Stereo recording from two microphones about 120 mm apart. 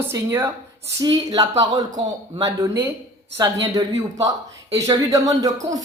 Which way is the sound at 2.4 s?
30° right (ahead or behind).